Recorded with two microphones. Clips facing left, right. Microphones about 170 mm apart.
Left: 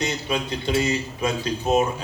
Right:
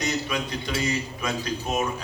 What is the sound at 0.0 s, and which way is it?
A man's voice, 30° left (ahead or behind).